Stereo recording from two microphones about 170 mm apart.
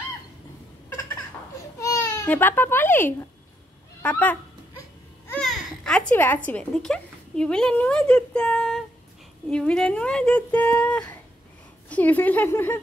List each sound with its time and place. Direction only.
1.8 s baby cry: 20° left (ahead or behind)
2.2 s a child's voice: 10° left (ahead or behind)